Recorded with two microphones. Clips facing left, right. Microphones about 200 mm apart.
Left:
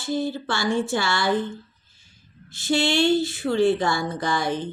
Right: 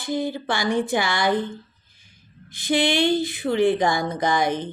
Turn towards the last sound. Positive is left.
turn(degrees=-20)  # may be behind; listen again after turning